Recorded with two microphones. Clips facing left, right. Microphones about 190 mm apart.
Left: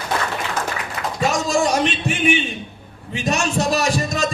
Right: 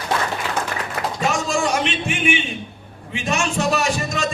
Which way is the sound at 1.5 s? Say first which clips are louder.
Left 2 dB; 40° left (ahead or behind).